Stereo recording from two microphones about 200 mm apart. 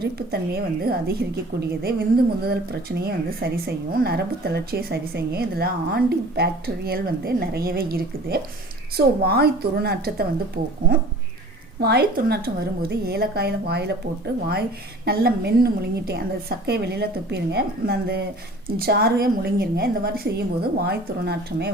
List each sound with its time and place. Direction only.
0.0 s a woman's voice: 55° right (ahead or behind)
15.0 s a woman's voice: 50° right (ahead or behind)